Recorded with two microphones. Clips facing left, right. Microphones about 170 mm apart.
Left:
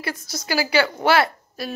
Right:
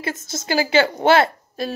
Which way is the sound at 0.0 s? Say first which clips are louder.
Right 2 dB; 20° right (ahead or behind).